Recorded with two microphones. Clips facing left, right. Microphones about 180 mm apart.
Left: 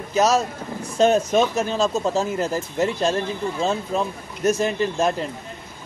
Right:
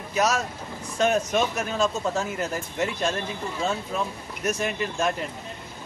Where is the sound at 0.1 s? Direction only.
30° left (ahead or behind).